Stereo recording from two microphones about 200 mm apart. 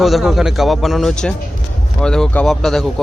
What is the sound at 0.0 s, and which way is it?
Speech, centre (ahead or behind).